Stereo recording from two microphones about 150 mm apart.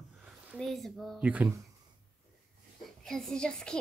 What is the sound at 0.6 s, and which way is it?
Speech, centre (ahead or behind).